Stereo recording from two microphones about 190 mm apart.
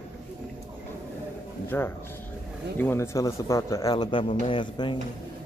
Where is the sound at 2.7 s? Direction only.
10° left (ahead or behind).